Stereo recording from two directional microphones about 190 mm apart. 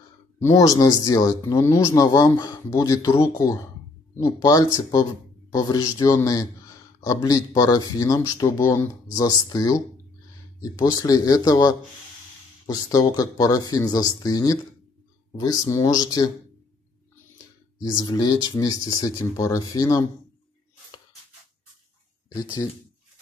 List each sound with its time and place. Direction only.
0.4 s speech: 20° left (ahead or behind)
17.9 s speech: 20° left (ahead or behind)
22.3 s speech: 20° left (ahead or behind)